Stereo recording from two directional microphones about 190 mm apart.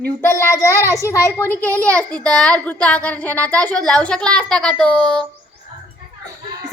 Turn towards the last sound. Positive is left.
turn(degrees=5)  # may be behind; listen again after turning